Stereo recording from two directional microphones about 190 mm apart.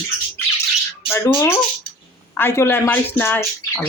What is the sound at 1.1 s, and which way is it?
Speech, 15° left (ahead or behind).